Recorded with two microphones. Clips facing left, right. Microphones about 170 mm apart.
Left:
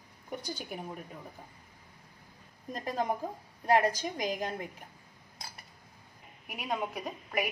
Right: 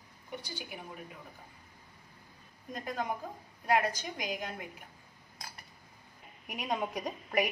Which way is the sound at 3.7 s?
30° left (ahead or behind).